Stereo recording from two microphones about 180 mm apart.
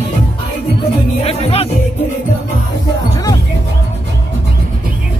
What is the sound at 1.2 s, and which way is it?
Speech, 35° left (ahead or behind).